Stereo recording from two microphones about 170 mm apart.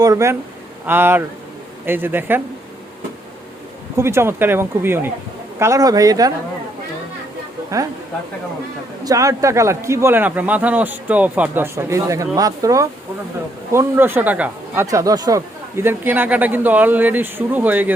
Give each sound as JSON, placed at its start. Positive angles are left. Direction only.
{"t": 0.0, "sound": "a man's voice", "side_deg": -20}
{"t": 3.9, "sound": "a man's voice", "side_deg": -15}
{"t": 9.0, "sound": "a man's voice", "side_deg": -20}
{"t": 14.8, "sound": "a man's voice", "side_deg": -20}